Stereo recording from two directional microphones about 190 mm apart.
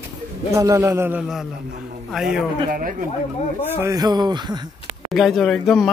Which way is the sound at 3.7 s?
15° right (ahead or behind).